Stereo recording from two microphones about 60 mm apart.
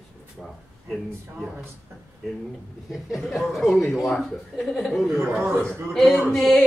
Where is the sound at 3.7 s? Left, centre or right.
Centre.